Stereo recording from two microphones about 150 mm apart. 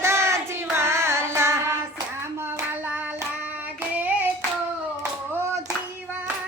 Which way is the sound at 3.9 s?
10° right (ahead or behind).